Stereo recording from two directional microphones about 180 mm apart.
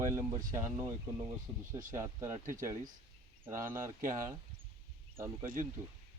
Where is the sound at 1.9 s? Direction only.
20° right (ahead or behind).